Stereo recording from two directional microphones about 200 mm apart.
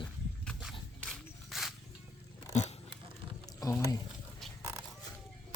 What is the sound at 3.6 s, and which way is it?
Speech, 15° left (ahead or behind).